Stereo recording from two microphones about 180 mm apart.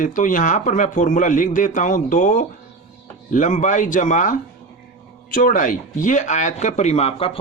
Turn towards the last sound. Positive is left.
turn(degrees=35)  # may be behind; listen again after turning